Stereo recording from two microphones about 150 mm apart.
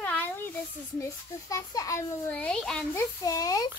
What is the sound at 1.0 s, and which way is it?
A child's voice, 20° left (ahead or behind).